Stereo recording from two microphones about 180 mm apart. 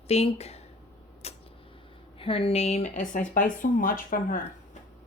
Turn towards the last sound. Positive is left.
turn(degrees=45)  # may be behind; listen again after turning